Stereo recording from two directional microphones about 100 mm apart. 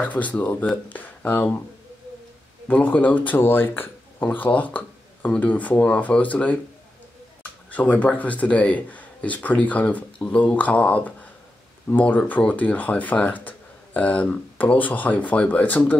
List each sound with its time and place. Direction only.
0.0 s speech: 15° left (ahead or behind)
2.7 s speech: 15° left (ahead or behind)
7.7 s speech: 15° left (ahead or behind)